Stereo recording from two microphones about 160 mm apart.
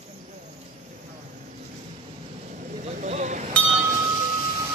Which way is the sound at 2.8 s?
45° right (ahead or behind).